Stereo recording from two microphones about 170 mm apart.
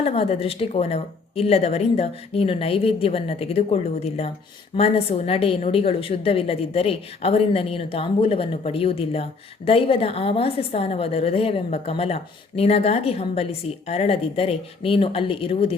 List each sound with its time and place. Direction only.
0.0 s a woman's voice: 35° left (ahead or behind)